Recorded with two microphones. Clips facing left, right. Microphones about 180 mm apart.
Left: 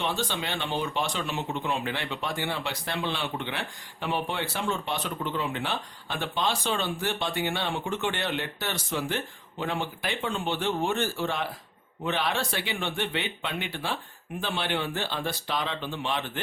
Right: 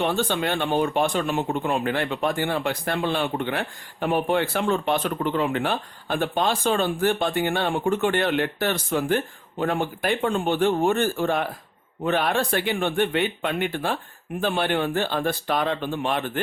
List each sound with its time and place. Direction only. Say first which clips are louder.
0.0 s speech: right 7 dB; 55° right (ahead or behind)